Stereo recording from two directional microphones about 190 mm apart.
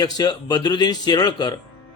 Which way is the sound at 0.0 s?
20° left (ahead or behind).